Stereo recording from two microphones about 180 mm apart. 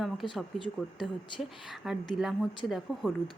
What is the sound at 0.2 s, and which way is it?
A woman's voice, centre (ahead or behind).